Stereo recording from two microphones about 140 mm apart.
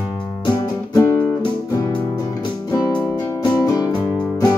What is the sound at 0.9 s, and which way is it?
Music, 20° left (ahead or behind).